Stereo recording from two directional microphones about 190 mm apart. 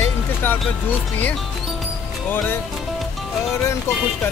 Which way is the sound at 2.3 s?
10° left (ahead or behind).